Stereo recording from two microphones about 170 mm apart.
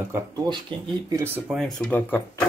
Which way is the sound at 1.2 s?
10° right (ahead or behind).